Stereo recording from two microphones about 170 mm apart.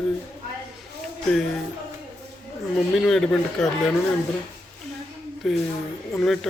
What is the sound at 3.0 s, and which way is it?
Speech, 5° left (ahead or behind).